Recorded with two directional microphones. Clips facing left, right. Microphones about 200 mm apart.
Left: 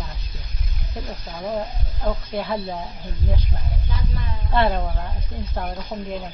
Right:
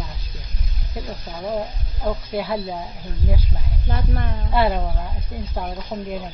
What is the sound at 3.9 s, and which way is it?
Speech, 60° right (ahead or behind).